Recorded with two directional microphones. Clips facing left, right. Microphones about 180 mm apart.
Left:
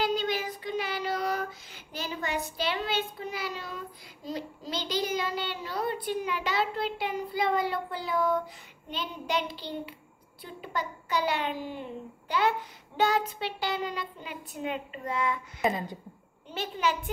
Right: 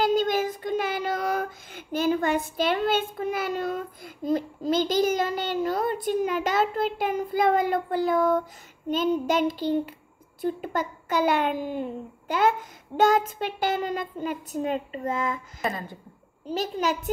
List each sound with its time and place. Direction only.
0.0 s child singing: 45° right (ahead or behind)
10.4 s a child's voice: 45° right (ahead or behind)
15.6 s a woman's voice: 15° left (ahead or behind)
16.4 s a child's voice: 40° right (ahead or behind)